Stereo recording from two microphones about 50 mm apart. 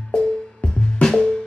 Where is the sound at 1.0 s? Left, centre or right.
Centre.